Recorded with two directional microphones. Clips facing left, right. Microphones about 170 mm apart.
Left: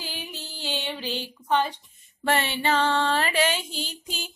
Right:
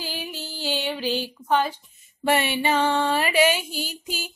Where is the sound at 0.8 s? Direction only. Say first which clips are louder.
Right 5 dB; 10° right (ahead or behind).